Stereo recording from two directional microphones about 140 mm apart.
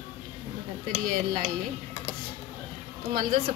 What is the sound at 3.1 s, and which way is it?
Speech, 90° right.